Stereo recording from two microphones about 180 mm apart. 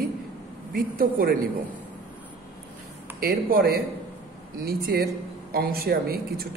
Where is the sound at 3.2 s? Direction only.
55° right (ahead or behind).